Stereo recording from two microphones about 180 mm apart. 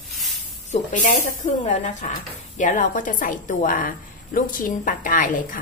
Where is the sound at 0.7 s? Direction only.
40° left (ahead or behind).